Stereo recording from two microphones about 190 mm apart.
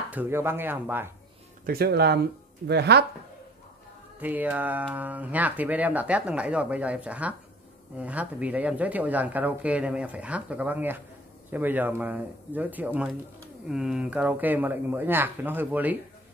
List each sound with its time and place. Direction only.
0.1 s speech: 10° right (ahead or behind)
1.7 s speech: 55° right (ahead or behind)
4.2 s speech: 10° right (ahead or behind)